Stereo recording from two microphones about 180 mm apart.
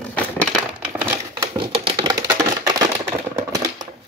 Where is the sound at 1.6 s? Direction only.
30° right (ahead or behind); by 3.6 s 15° right (ahead or behind).